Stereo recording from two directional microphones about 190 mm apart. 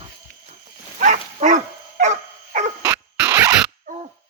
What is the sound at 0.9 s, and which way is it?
Dog, 40° right (ahead or behind).